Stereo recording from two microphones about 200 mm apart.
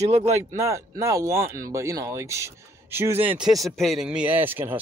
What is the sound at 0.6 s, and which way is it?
Speech, 15° right (ahead or behind).